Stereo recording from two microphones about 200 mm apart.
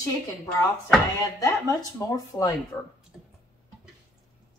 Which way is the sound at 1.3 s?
15° left (ahead or behind).